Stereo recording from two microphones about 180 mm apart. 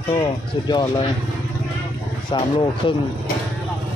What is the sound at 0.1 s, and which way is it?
Speech, 25° left (ahead or behind).